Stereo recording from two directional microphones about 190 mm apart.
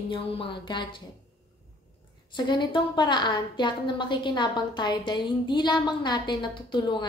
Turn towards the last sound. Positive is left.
turn(degrees=25)  # may be behind; listen again after turning